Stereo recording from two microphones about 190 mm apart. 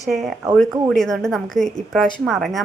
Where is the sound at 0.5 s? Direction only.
Centre (ahead or behind).